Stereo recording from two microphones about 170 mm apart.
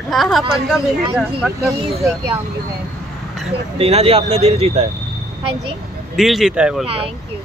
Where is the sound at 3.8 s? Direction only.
35° right (ahead or behind).